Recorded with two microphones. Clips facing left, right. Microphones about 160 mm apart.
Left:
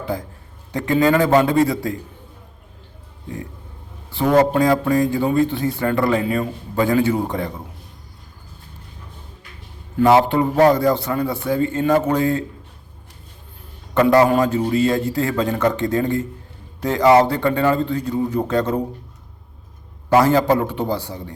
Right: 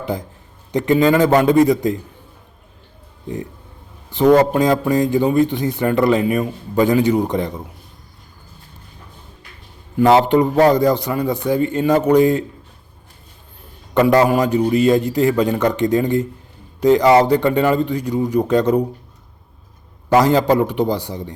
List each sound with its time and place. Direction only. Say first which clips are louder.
0.0 s a man's voice: right 1 dB; 20° right (ahead or behind)
4.1 s a man's voice: right 3 dB; 20° right (ahead or behind)
10.0 s a man's voice: right 2 dB; 20° right (ahead or behind)
13.9 s a man's voice: right 1 dB; 15° right (ahead or behind)
20.1 s a man's voice: right 1 dB; 15° right (ahead or behind)